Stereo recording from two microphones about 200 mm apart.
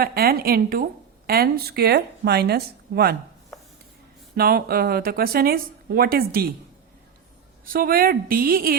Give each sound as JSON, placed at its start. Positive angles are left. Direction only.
{"t": 0.0, "sound": "speech", "side_deg": -50}
{"t": 4.4, "sound": "speech", "side_deg": -50}
{"t": 7.6, "sound": "speech", "side_deg": -45}